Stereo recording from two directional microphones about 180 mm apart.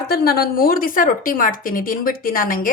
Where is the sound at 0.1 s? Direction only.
60° left (ahead or behind).